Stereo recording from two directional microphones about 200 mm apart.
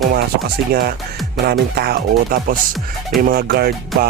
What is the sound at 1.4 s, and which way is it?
Speech, 50° right (ahead or behind).